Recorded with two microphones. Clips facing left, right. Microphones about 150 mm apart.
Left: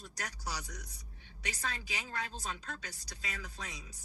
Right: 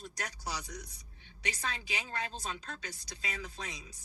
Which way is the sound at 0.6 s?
30° right (ahead or behind).